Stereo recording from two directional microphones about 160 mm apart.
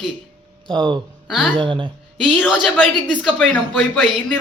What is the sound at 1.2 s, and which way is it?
Speech, centre (ahead or behind).